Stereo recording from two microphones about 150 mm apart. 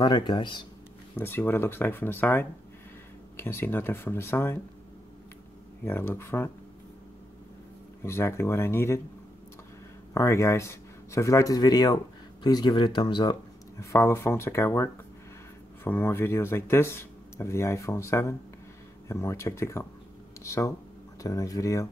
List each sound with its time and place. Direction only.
0.0 s speech: 30° left (ahead or behind)
1.1 s speech: 15° left (ahead or behind)
5.9 s speech: 15° left (ahead or behind)
8.0 s speech: 15° left (ahead or behind)
10.1 s speech: 20° left (ahead or behind)